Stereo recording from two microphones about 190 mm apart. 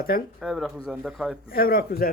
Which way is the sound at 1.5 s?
50° left (ahead or behind).